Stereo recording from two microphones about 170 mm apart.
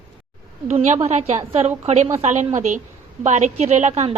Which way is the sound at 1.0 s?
40° right (ahead or behind).